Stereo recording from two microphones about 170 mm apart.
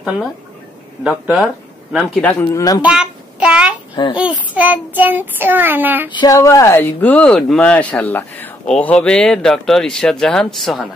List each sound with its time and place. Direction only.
1.0 s speech: 5° right (ahead or behind)
2.2 s speech: 20° left (ahead or behind)
2.8 s child singing: 5° right (ahead or behind)
3.9 s a child's voice: 30° left (ahead or behind)
4.2 s child singing: 10° right (ahead or behind)
6.1 s speech: 20° left (ahead or behind); by 10.9 s centre (ahead or behind)